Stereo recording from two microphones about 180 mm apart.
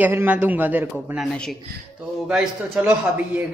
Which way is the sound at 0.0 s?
10° right (ahead or behind).